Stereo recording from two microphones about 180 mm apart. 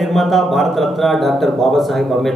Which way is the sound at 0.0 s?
Centre (ahead or behind).